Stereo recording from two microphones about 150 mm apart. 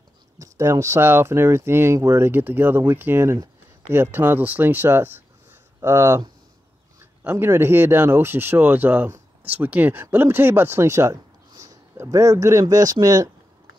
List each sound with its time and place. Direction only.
0.4 s speech: 20° right (ahead or behind)
7.2 s speech: 15° right (ahead or behind)